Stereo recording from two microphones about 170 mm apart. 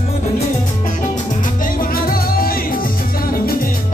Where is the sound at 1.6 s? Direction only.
55° left (ahead or behind).